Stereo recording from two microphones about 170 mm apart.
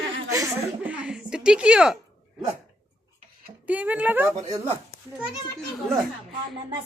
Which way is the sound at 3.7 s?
10° right (ahead or behind).